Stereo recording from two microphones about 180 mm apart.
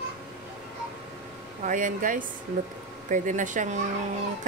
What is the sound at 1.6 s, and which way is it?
Speech, 50° right (ahead or behind).